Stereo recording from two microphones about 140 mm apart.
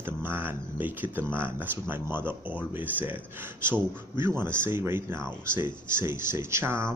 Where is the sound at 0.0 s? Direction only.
15° right (ahead or behind).